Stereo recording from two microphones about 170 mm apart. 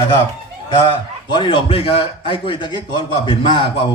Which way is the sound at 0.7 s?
30° left (ahead or behind).